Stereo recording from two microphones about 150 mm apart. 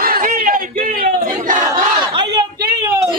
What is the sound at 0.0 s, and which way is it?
Battle cry, 70° right (ahead or behind).